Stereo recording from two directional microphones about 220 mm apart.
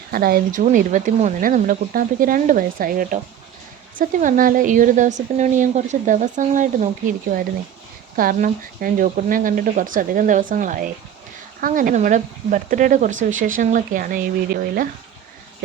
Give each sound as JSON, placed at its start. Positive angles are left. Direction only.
{"t": 0.1, "sound": "speech", "side_deg": -40}